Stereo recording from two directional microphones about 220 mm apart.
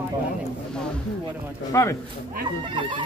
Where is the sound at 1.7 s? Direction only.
10° left (ahead or behind).